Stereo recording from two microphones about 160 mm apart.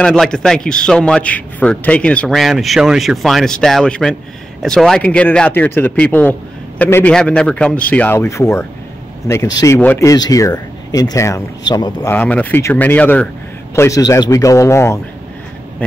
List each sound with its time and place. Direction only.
0.0 s a man's voice: 5° left (ahead or behind); by 12.1 s 25° left (ahead or behind)
12.1 s a man's voice: 10° left (ahead or behind)